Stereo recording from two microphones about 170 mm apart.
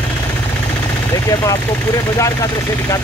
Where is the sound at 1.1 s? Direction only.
20° left (ahead or behind).